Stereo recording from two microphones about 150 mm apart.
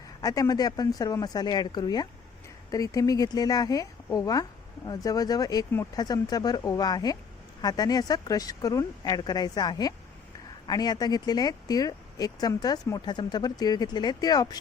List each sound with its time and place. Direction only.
0.2 s speech: 25° left (ahead or behind)